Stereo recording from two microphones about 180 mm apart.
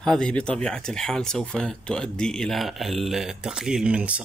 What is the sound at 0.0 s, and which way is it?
Speech, 5° left (ahead or behind).